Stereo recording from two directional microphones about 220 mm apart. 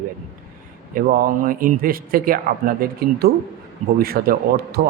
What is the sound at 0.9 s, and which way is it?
Speech, 40° right (ahead or behind).